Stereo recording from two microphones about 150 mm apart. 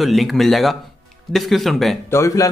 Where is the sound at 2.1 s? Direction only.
20° left (ahead or behind).